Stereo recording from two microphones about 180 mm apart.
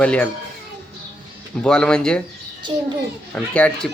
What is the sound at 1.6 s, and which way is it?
Speech, 5° left (ahead or behind).